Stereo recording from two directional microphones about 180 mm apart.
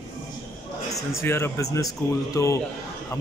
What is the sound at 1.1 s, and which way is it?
Speech, 15° left (ahead or behind).